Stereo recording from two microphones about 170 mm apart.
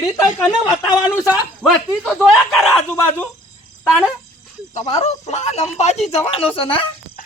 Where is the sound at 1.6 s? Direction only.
Centre (ahead or behind).